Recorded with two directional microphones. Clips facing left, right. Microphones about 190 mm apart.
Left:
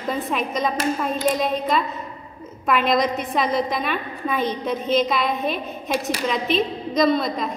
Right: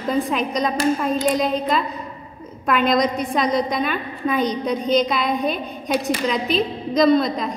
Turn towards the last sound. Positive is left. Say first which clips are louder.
# right 3 dB
turn(degrees=0)  # may be behind; listen again after turning